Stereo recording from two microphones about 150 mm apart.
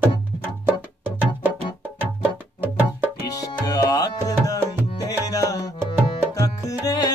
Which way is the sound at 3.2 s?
25° left (ahead or behind).